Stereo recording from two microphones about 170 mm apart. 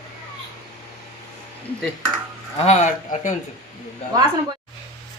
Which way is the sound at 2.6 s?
45° left (ahead or behind).